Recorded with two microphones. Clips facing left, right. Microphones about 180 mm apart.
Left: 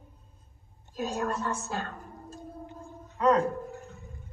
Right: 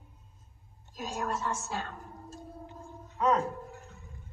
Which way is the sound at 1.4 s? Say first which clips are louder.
Left 2 dB; 55° left (ahead or behind).